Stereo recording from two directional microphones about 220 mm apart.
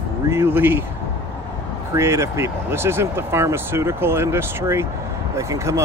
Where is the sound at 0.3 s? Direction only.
10° right (ahead or behind).